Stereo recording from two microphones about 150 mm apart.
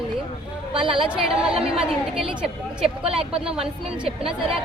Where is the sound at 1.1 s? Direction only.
5° right (ahead or behind).